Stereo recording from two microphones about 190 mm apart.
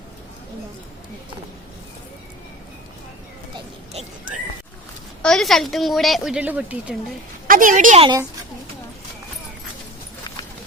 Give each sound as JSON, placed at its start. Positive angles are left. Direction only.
{"t": 5.2, "sound": "a woman's voice", "side_deg": 0}
{"t": 7.4, "sound": "a woman's voice", "side_deg": -45}